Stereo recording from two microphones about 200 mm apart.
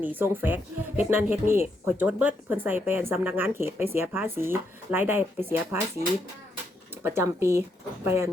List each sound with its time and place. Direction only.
0.0 s speech: 10° right (ahead or behind)
7.0 s speech: 10° right (ahead or behind)